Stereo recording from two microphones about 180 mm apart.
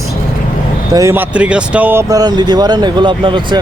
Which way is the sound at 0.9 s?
15° right (ahead or behind).